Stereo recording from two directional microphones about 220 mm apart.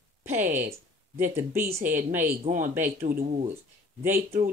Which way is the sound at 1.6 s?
35° right (ahead or behind).